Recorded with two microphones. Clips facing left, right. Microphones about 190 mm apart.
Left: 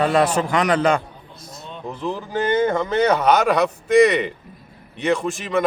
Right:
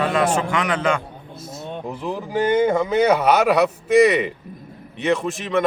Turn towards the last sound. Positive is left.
turn(degrees=0)  # may be behind; listen again after turning